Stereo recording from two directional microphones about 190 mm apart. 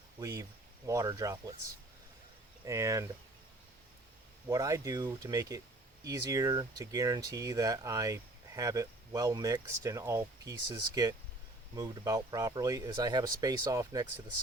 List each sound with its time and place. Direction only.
0.2 s speech: 15° right (ahead or behind)
2.6 s speech: 15° right (ahead or behind)
4.4 s speech: 15° right (ahead or behind)